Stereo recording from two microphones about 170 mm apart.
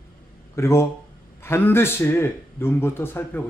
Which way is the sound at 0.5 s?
15° left (ahead or behind).